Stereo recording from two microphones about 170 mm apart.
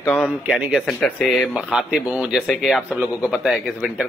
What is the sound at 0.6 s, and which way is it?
A man's voice, 5° right (ahead or behind).